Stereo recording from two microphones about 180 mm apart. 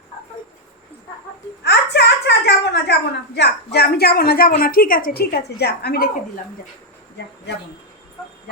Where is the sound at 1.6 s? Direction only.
65° left (ahead or behind).